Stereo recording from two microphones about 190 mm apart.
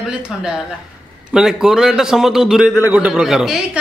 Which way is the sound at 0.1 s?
5° right (ahead or behind).